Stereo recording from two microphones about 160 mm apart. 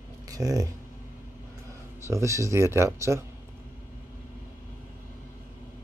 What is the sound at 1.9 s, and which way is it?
Speech, 15° right (ahead or behind).